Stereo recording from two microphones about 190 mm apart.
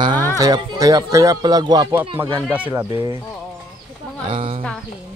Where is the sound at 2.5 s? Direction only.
10° right (ahead or behind).